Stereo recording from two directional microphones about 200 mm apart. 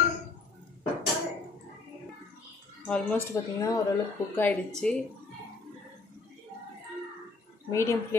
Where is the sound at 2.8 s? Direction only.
15° left (ahead or behind).